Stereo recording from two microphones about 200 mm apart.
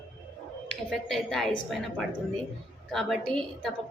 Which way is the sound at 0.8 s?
Centre (ahead or behind).